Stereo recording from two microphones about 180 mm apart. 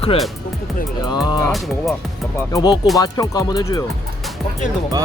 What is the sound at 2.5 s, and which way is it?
Speech, 20° left (ahead or behind).